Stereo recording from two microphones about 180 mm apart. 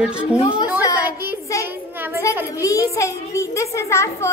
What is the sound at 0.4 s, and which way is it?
Speech, 25° left (ahead or behind).